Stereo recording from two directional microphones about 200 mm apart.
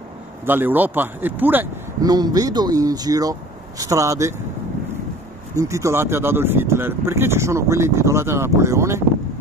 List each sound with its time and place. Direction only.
0.5 s speech: 10° right (ahead or behind)
5.6 s speech: 15° right (ahead or behind)